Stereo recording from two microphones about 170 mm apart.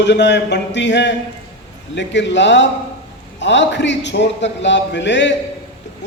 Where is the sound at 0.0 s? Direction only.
90° left.